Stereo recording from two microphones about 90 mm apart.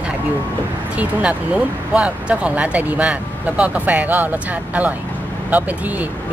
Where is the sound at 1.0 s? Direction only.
15° right (ahead or behind).